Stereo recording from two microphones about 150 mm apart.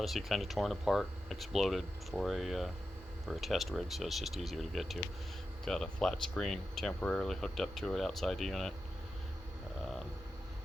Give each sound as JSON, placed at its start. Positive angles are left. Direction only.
{"t": 0.0, "sound": "speech", "side_deg": 0}